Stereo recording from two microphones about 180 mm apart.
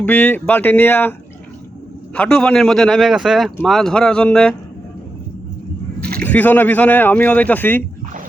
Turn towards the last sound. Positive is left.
turn(degrees=10)  # may be behind; listen again after turning